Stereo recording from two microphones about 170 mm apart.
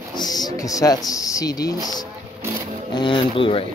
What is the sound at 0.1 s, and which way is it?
Speech, 25° left (ahead or behind).